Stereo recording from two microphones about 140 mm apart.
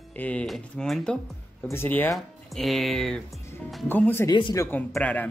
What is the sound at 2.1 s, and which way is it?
Speech, centre (ahead or behind).